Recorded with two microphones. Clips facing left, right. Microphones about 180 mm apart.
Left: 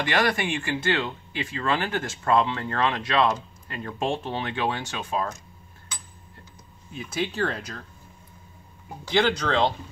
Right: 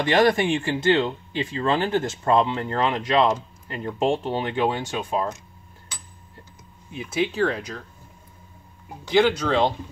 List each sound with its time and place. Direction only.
0.1 s speech: 20° right (ahead or behind)
7.0 s speech: 5° right (ahead or behind)
8.8 s speech: centre (ahead or behind)